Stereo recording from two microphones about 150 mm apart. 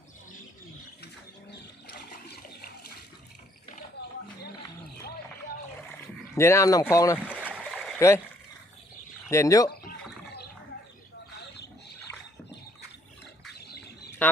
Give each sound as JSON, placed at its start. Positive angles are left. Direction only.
{"t": 1.9, "sound": "water", "side_deg": 90}
{"t": 4.0, "sound": "a sound", "side_deg": 90}
{"t": 6.3, "sound": "speech", "side_deg": 20}
{"t": 7.4, "sound": "stream", "side_deg": -10}
{"t": 7.9, "sound": "speech", "side_deg": 20}
{"t": 9.3, "sound": "speech", "side_deg": 20}
{"t": 14.2, "sound": "speech", "side_deg": 10}